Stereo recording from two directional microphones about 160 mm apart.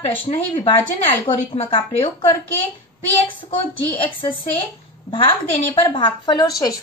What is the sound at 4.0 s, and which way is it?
Speech, 30° left (ahead or behind).